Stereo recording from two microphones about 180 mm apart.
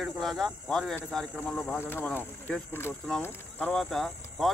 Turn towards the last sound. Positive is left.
turn(degrees=0)  # may be behind; listen again after turning